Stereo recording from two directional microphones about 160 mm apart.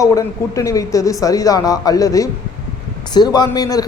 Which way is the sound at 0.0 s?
20° left (ahead or behind).